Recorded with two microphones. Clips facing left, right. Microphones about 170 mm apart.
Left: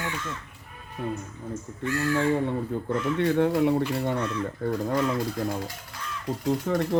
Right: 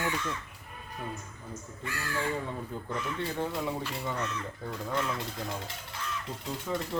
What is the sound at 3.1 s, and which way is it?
Speech, 70° left (ahead or behind).